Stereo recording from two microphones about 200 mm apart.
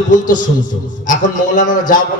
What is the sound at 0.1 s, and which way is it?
A man's voice, 40° left (ahead or behind).